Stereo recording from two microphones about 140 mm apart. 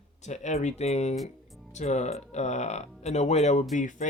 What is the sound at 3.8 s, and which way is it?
Speech, 65° left (ahead or behind).